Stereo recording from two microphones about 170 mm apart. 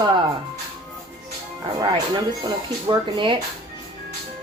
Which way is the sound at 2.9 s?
30° right (ahead or behind).